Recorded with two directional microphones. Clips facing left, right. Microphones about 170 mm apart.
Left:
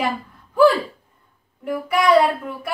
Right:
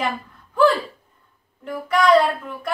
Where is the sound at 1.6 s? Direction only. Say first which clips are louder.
Even; 10° left (ahead or behind).